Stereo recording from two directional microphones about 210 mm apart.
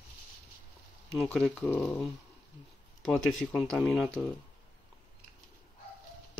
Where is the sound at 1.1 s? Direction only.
Centre (ahead or behind).